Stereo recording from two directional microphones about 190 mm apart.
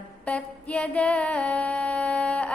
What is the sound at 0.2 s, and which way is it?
Music, 5° left (ahead or behind).